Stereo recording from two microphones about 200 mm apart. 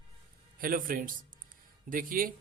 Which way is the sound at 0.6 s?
45° right (ahead or behind).